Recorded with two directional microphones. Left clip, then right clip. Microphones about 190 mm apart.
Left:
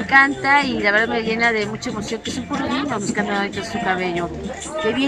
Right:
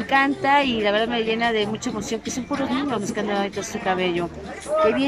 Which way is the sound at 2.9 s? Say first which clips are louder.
Left 2 dB; 15° right (ahead or behind).